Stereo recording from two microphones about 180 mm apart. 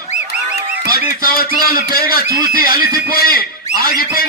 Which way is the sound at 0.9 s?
55° left (ahead or behind).